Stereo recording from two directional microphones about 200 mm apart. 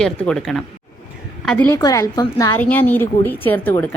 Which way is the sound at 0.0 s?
5° left (ahead or behind).